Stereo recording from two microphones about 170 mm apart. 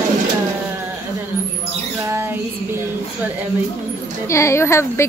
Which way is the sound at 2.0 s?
15° right (ahead or behind).